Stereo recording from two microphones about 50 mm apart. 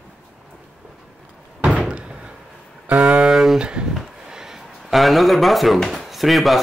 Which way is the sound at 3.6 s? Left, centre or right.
Centre.